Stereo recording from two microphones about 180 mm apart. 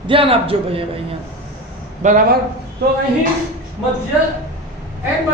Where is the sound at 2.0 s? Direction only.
45° right (ahead or behind).